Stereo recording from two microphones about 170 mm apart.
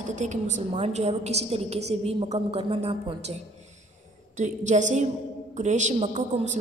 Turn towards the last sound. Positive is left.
turn(degrees=-45)  # may be behind; listen again after turning